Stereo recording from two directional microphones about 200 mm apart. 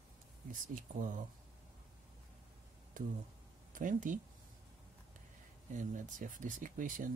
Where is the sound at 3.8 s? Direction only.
40° right (ahead or behind).